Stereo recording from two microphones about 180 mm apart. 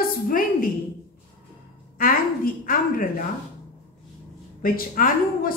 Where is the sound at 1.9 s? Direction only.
50° left (ahead or behind).